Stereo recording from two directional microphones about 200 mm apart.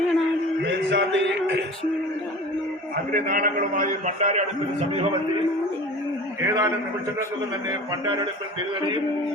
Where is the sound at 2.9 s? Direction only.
45° right (ahead or behind).